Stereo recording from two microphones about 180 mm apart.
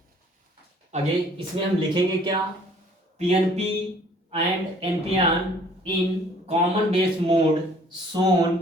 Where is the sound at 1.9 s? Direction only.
25° right (ahead or behind).